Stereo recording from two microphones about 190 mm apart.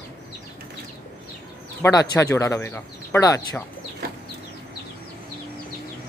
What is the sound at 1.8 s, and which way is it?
Speech, 20° left (ahead or behind).